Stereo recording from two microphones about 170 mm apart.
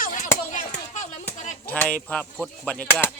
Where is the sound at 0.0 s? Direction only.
50° left (ahead or behind).